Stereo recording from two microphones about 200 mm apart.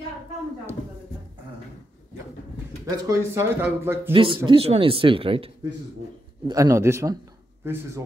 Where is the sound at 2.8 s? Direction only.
15° right (ahead or behind).